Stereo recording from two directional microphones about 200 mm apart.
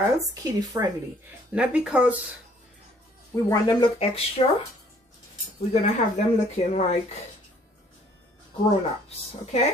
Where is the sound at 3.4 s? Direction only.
20° left (ahead or behind).